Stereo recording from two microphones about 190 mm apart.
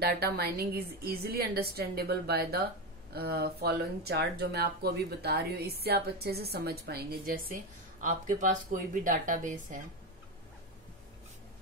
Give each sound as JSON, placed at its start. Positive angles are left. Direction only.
{"t": 0.0, "sound": "speech", "side_deg": -55}
{"t": 8.0, "sound": "speech", "side_deg": -45}